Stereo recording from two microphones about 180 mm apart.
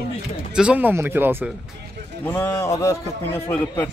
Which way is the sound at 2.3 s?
15° left (ahead or behind).